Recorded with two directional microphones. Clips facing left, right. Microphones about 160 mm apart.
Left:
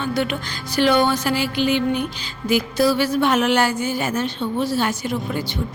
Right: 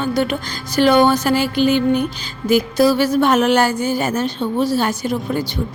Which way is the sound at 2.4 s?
45° right (ahead or behind).